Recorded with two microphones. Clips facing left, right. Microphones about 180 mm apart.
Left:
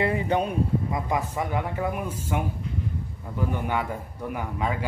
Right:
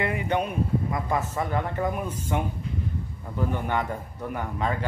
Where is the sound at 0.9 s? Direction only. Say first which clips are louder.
Even; 15° left (ahead or behind).